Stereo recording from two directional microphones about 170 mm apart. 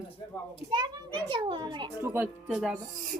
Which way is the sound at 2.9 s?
50° right (ahead or behind).